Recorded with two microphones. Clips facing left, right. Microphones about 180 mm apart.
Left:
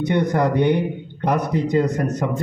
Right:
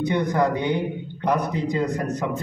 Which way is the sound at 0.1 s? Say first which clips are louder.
Left 4 dB; 60° left (ahead or behind).